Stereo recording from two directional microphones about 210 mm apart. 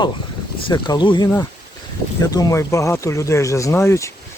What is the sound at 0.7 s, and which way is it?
Speech, 20° left (ahead or behind).